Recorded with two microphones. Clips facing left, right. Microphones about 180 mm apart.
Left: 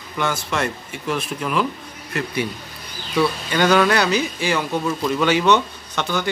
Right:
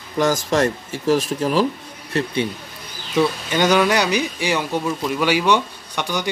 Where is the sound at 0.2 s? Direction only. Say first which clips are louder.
Right 5 dB; 40° right (ahead or behind).